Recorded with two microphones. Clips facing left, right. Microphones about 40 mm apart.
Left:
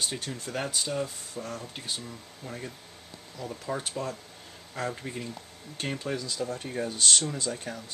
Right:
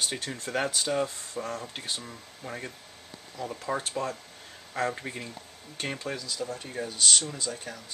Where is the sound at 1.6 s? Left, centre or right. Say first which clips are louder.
Right 1 dB; centre.